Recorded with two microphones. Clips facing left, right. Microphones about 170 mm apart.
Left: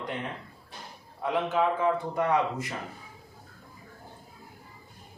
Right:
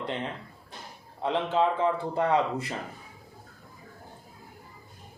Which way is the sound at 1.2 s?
25° right (ahead or behind).